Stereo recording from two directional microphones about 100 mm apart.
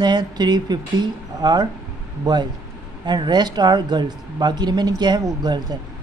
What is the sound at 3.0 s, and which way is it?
Speech, 45° right (ahead or behind).